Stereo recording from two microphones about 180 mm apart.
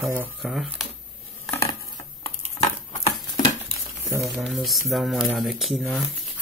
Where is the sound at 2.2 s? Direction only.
35° left (ahead or behind).